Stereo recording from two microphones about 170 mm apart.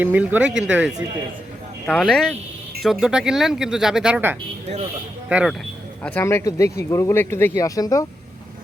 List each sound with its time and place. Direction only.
0.0 s speech: 10° right (ahead or behind)
6.0 s speech: 10° left (ahead or behind)